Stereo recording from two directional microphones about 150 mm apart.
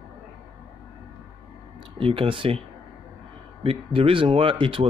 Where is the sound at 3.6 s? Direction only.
35° right (ahead or behind).